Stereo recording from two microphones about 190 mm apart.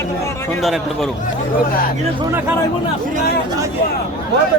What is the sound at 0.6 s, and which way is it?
Speech, centre (ahead or behind).